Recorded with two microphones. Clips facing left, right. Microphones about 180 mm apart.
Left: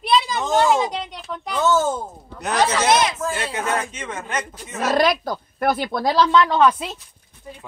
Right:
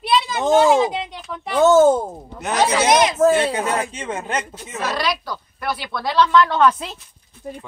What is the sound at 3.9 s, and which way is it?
Speech, 30° right (ahead or behind).